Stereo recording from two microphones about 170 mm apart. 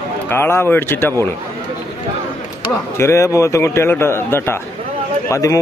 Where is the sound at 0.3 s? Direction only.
15° left (ahead or behind).